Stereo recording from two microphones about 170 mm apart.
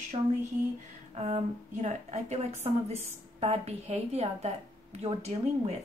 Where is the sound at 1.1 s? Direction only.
40° right (ahead or behind).